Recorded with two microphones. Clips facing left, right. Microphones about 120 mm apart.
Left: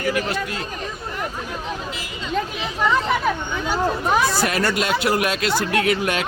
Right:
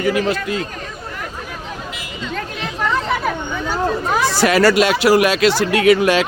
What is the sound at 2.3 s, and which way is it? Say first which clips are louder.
Speech: left 3 dB; 5° left (ahead or behind).